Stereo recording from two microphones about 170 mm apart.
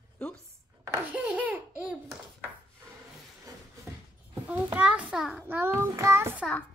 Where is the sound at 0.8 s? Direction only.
15° right (ahead or behind).